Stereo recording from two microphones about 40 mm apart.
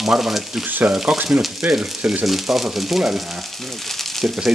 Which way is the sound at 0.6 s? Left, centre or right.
Right.